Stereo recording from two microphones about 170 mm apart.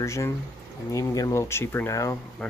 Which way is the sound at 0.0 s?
15° left (ahead or behind).